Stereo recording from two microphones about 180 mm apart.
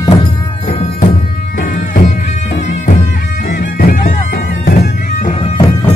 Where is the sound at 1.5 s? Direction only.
50° left (ahead or behind).